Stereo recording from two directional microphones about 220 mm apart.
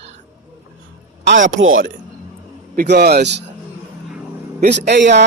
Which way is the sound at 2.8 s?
50° right (ahead or behind).